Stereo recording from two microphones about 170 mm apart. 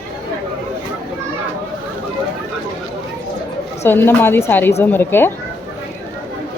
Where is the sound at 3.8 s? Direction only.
15° left (ahead or behind).